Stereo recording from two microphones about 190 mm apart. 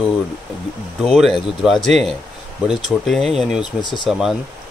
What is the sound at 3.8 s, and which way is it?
Speech, 25° left (ahead or behind).